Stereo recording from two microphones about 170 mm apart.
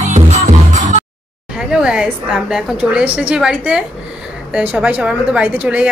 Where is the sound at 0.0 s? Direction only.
45° right (ahead or behind).